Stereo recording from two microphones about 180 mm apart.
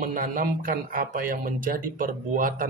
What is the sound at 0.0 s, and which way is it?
A man's voice, 50° right (ahead or behind).